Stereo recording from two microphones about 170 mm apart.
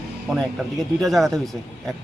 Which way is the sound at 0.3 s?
Centre (ahead or behind).